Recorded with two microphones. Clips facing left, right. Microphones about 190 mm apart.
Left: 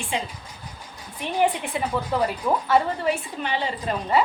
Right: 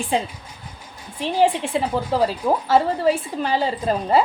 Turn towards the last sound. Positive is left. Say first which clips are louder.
# right 5 dB
turn(degrees=-35)  # may be behind; listen again after turning